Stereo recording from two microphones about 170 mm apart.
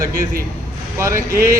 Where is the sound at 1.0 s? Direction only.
15° right (ahead or behind).